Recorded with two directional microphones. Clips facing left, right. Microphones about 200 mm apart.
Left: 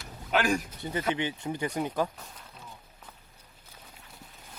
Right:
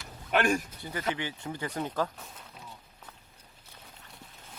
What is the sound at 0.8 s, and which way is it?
Speech, 20° left (ahead or behind).